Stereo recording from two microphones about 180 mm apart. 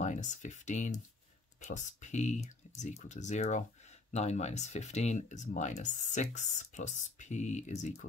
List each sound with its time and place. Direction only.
0.0 s speech: 40° left (ahead or behind)